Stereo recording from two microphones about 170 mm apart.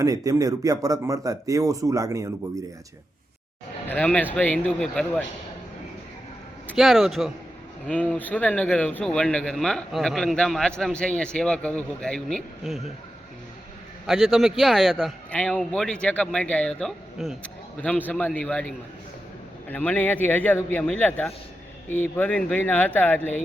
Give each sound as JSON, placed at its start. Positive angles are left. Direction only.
{"t": 0.0, "sound": "speech", "side_deg": -20}
{"t": 3.8, "sound": "a man's voice", "side_deg": 10}
{"t": 6.7, "sound": "a man's voice", "side_deg": 0}
{"t": 14.1, "sound": "a man's voice", "side_deg": 0}